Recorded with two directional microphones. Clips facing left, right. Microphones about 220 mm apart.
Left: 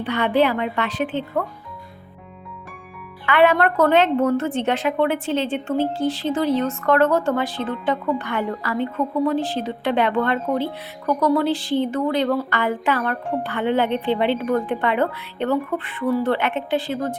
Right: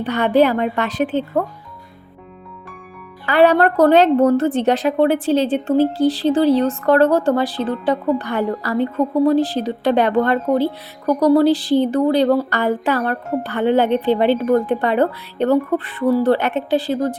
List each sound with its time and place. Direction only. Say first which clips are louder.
0.0 s a woman's voice: right 4 dB; 40° right (ahead or behind)
3.2 s a woman's voice: right 3 dB; 35° right (ahead or behind)